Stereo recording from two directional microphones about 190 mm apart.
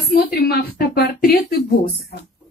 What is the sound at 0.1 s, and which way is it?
A woman's voice, 55° left (ahead or behind).